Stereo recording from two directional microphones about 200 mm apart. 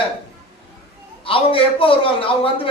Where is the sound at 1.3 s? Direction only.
25° left (ahead or behind).